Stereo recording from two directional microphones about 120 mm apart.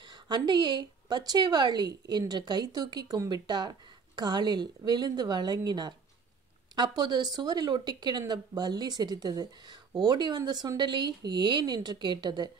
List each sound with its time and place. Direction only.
0.1 s a woman's voice: 35° right (ahead or behind)